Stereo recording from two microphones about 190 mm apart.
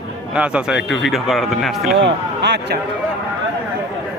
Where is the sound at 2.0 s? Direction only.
70° right (ahead or behind).